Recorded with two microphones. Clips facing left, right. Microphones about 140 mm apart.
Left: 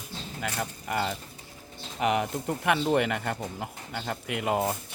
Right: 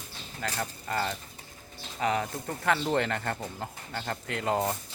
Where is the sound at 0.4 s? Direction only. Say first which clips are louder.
Even; 15° left (ahead or behind).